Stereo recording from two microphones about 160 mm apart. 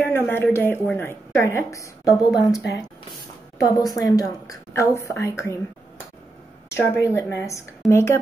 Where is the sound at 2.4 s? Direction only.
20° left (ahead or behind).